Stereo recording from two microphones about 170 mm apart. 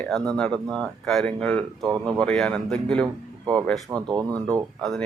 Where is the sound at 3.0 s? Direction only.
20° right (ahead or behind).